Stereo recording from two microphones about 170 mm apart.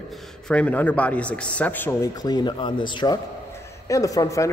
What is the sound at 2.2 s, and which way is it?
A man's voice, 25° left (ahead or behind).